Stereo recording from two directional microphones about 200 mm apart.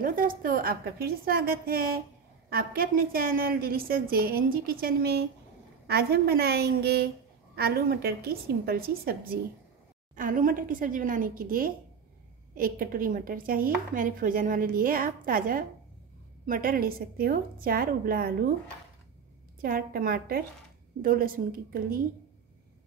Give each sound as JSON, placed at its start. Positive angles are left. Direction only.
{"t": 0.0, "sound": "a woman's voice", "side_deg": -45}
{"t": 19.6, "sound": "a woman's voice", "side_deg": -45}